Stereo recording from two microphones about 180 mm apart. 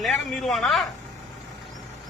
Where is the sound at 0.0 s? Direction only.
Centre (ahead or behind).